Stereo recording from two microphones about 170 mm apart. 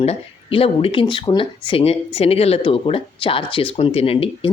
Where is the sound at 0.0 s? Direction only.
35° left (ahead or behind).